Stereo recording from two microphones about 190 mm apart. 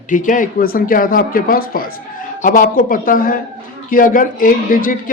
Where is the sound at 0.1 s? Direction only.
45° left (ahead or behind).